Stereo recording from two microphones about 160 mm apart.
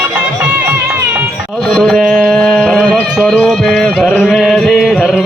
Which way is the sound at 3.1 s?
5° left (ahead or behind).